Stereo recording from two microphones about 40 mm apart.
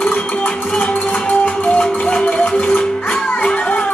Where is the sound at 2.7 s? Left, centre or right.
Left.